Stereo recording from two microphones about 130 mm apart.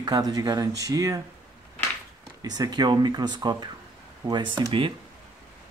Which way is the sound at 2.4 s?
30° right (ahead or behind).